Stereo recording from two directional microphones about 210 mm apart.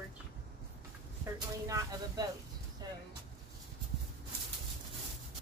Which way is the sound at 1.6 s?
15° right (ahead or behind).